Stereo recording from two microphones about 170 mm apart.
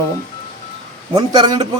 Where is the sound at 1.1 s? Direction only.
25° right (ahead or behind).